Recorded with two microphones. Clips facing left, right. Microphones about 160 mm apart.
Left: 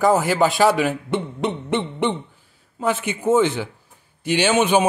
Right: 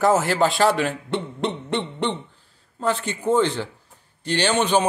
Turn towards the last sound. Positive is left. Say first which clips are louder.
# left 3 dB
turn(degrees=10)  # may be behind; listen again after turning